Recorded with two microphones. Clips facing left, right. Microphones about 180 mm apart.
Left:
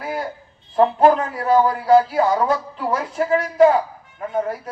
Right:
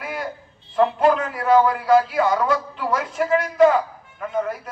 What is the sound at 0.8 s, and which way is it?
A man's voice, 35° left (ahead or behind).